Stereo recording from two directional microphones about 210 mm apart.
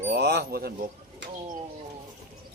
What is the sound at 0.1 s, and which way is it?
Speech, 50° right (ahead or behind).